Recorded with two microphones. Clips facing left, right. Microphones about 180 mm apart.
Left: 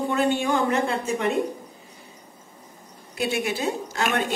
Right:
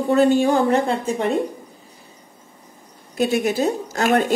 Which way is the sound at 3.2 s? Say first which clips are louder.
Right 7 dB; 40° right (ahead or behind).